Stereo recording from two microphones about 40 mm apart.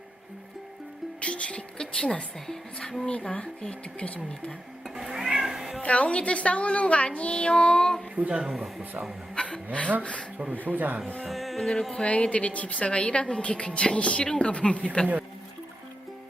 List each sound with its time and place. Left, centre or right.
1.2 s a woman's voice: left
1.8 s a woman's voice: centre
3.1 s a woman's voice: left
4.9 s cat: centre
5.8 s a woman's voice: left
8.3 s speech: centre
8.8 s speech: right
9.3 s a sound: left
10.0 s a woman's voice: left
10.5 s speech: right
11.3 s music: centre
11.7 s a woman's voice: centre
12.0 s a woman's voice: left